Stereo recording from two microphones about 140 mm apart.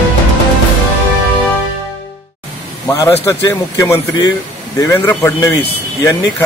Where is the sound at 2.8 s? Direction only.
20° left (ahead or behind).